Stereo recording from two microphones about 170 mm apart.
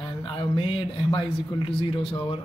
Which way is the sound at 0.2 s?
30° left (ahead or behind).